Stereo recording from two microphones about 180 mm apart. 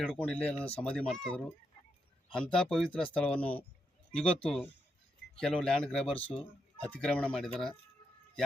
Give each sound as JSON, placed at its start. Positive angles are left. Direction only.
{"t": 0.0, "sound": "speech", "side_deg": 5}
{"t": 6.1, "sound": "speech", "side_deg": 30}
{"t": 6.7, "sound": "speech", "side_deg": 5}